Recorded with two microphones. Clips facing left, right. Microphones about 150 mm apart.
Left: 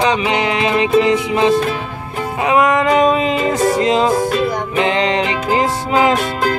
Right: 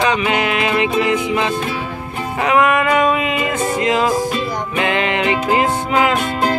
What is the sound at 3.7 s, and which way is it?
Music, 30° left (ahead or behind).